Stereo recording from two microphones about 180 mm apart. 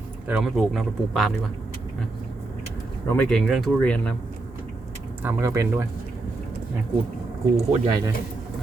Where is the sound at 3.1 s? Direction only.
Centre (ahead or behind).